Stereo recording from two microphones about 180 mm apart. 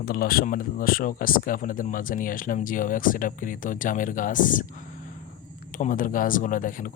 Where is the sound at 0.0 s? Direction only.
55° left (ahead or behind).